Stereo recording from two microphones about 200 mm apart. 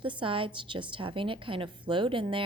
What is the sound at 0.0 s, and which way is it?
A woman's voice, 25° right (ahead or behind).